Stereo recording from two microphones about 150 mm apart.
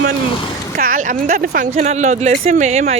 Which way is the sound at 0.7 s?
70° right (ahead or behind).